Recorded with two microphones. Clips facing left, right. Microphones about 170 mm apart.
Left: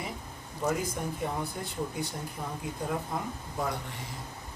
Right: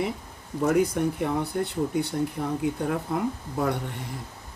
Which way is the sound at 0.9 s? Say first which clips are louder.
Right 8 dB; 65° right (ahead or behind).